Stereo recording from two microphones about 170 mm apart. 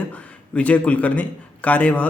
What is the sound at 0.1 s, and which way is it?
A man's voice, 10° left (ahead or behind).